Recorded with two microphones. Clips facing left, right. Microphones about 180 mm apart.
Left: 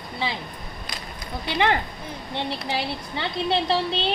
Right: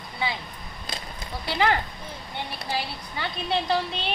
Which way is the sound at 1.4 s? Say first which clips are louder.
Left 1 dB; 20° left (ahead or behind).